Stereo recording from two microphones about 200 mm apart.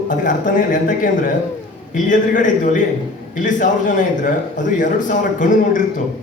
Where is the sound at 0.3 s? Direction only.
40° left (ahead or behind).